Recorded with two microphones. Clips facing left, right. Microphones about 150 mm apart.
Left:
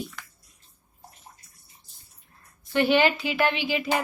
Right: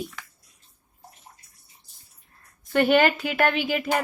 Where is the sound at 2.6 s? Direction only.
50° right (ahead or behind).